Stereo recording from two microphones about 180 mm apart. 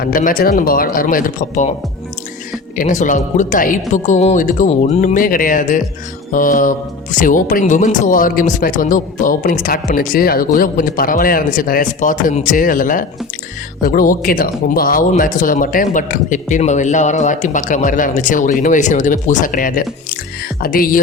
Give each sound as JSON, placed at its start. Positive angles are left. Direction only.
{"t": 0.0, "sound": "speech", "side_deg": 50}
{"t": 2.7, "sound": "speech", "side_deg": 45}